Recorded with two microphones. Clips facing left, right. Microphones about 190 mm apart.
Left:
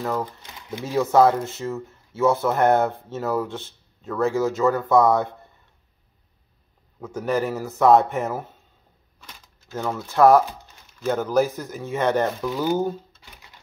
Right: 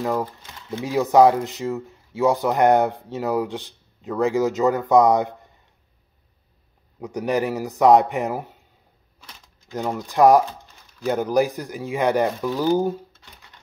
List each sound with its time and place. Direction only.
0.0 s speech: 15° right (ahead or behind)
7.0 s speech: 15° right (ahead or behind)
9.7 s speech: 15° right (ahead or behind)